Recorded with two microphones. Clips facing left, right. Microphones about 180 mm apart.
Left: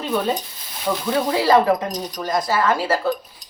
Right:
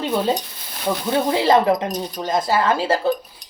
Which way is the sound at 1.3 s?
25° right (ahead or behind).